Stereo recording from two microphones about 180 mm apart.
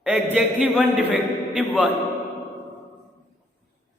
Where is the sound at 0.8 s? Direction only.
10° right (ahead or behind).